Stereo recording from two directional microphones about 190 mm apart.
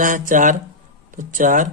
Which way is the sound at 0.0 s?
45° right (ahead or behind).